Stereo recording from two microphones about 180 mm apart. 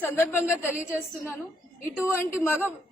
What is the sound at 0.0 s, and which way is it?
A woman's voice, 10° left (ahead or behind).